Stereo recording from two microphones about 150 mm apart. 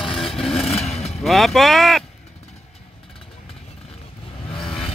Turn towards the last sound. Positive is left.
turn(degrees=5)  # may be behind; listen again after turning